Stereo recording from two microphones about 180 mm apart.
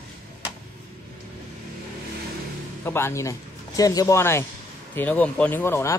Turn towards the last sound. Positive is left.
turn(degrees=15)  # may be behind; listen again after turning